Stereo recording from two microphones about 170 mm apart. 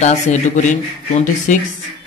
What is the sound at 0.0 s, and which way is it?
Speech, 45° left (ahead or behind).